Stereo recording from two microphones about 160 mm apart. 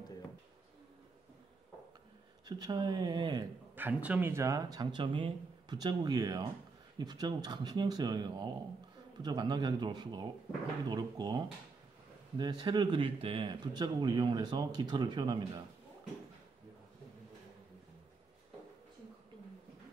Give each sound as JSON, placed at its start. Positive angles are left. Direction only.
{"t": 2.4, "sound": "speech", "side_deg": -25}
{"t": 3.7, "sound": "speech", "side_deg": -10}